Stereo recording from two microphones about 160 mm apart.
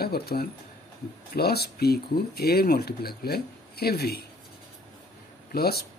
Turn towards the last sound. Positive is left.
turn(degrees=80)